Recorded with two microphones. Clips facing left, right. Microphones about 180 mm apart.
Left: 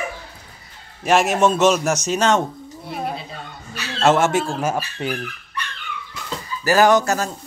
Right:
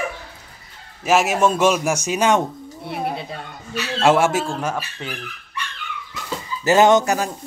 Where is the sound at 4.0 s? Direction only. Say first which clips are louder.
Even; 10° right (ahead or behind).